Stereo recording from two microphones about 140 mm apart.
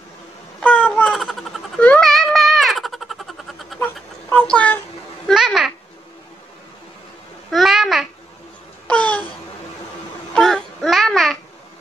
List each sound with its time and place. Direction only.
0.6 s a sound: 10° left (ahead or behind)
5.3 s babbling: 5° right (ahead or behind)
7.5 s babbling: 5° right (ahead or behind)
8.8 s babbling: 10° left (ahead or behind)
10.3 s babbling: 5° left (ahead or behind)